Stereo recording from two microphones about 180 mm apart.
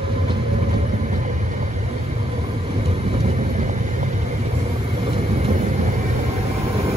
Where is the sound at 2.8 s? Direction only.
35° right (ahead or behind).